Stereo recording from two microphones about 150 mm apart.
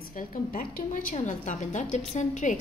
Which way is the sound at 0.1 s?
60° left (ahead or behind).